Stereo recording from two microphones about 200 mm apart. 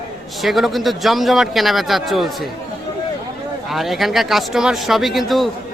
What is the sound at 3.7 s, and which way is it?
A man's voice, centre (ahead or behind).